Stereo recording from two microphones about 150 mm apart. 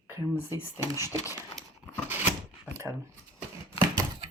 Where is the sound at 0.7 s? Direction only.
15° right (ahead or behind).